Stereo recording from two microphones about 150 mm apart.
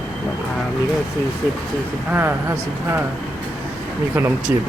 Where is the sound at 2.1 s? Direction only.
15° right (ahead or behind).